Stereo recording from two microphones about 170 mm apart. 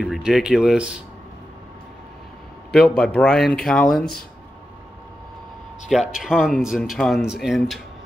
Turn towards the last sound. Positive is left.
turn(degrees=0)  # may be behind; listen again after turning